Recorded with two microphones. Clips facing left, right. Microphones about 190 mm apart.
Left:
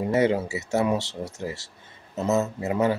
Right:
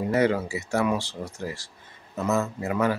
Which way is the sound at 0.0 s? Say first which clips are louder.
Left 1 dB; 20° left (ahead or behind).